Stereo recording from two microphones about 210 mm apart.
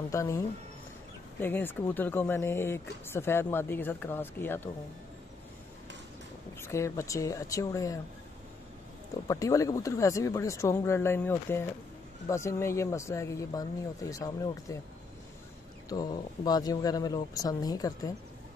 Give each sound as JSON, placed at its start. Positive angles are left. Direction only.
{"t": 0.1, "sound": "speech", "side_deg": 15}
{"t": 6.6, "sound": "speech", "side_deg": 15}
{"t": 9.3, "sound": "speech", "side_deg": 15}
{"t": 15.9, "sound": "speech", "side_deg": 20}